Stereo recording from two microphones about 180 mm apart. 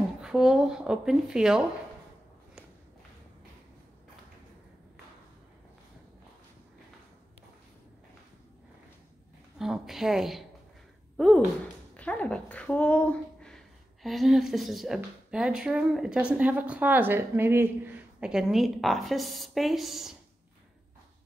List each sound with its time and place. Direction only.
0.2 s a woman's voice: 5° right (ahead or behind)
9.6 s a woman's voice: centre (ahead or behind)
18.2 s a woman's voice: centre (ahead or behind)